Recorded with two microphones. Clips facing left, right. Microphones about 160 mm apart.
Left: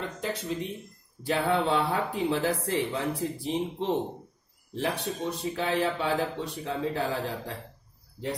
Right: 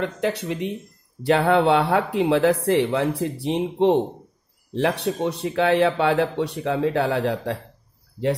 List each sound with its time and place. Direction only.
0.0 s speech: 70° right (ahead or behind)